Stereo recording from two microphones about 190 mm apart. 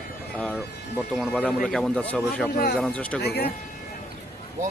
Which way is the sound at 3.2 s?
60° left (ahead or behind).